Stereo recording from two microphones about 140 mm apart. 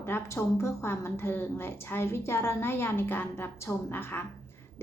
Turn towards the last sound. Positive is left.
turn(degrees=15)  # may be behind; listen again after turning